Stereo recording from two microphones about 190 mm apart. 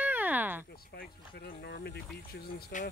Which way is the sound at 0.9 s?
55° left (ahead or behind).